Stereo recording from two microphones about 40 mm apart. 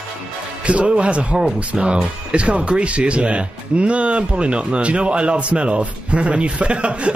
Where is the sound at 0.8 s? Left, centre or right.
Right.